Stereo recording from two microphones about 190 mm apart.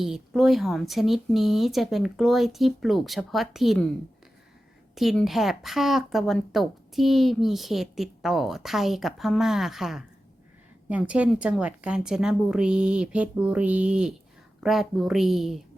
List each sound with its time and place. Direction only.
0.0 s a woman's voice: centre (ahead or behind)
4.9 s a woman's voice: centre (ahead or behind)